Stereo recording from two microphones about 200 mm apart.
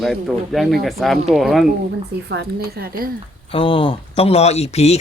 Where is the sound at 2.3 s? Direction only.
55° right (ahead or behind).